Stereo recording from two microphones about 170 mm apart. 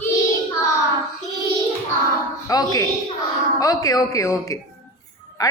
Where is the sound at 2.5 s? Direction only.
20° left (ahead or behind).